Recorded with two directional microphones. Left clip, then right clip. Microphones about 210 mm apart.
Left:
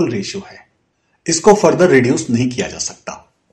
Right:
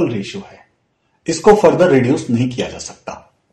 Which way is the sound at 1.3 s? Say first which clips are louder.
Right 1 dB; 20° left (ahead or behind).